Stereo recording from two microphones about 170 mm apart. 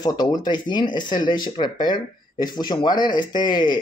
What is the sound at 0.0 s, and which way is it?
Speech, 25° left (ahead or behind).